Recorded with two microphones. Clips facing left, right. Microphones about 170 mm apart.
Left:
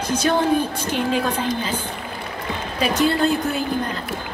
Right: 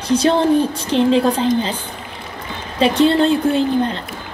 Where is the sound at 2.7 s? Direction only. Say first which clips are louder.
Right 6 dB; 25° right (ahead or behind).